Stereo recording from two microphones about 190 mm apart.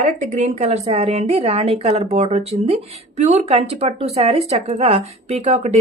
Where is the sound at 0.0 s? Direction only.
40° right (ahead or behind).